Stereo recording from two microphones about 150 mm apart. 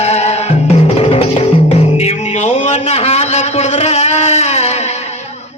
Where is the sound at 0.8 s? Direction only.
40° left (ahead or behind).